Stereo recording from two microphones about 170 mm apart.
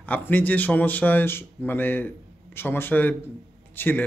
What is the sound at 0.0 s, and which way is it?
Speech, 10° left (ahead or behind).